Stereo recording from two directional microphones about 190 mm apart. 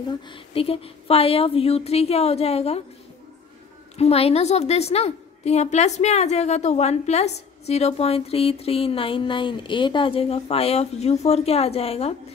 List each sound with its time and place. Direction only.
0.3 s a woman's voice: 30° left (ahead or behind)
4.0 s a woman's voice: 35° left (ahead or behind)